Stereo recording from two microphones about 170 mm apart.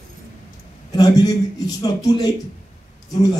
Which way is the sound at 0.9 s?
25° left (ahead or behind).